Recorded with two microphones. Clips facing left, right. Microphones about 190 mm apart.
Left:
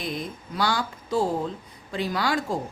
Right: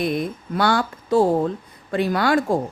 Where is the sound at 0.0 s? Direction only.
60° right (ahead or behind).